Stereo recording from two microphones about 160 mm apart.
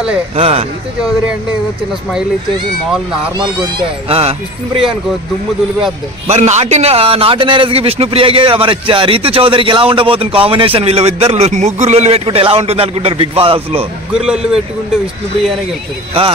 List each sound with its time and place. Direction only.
0.4 s a man's voice: 35° right (ahead or behind)
4.1 s a man's voice: 40° right (ahead or behind)
6.2 s a man's voice: 45° right (ahead or behind)
14.1 s speech: 5° right (ahead or behind)